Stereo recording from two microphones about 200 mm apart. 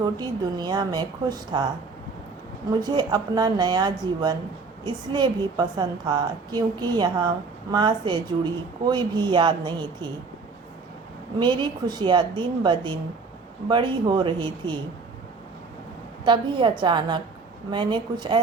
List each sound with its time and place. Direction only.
0.0 s a woman's voice: 20° right (ahead or behind)
2.6 s a woman's voice: 20° right (ahead or behind)
11.3 s a woman's voice: 25° right (ahead or behind)
16.2 s a woman's voice: 25° right (ahead or behind)